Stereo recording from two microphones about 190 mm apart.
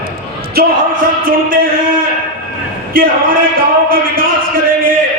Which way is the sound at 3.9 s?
50° right (ahead or behind).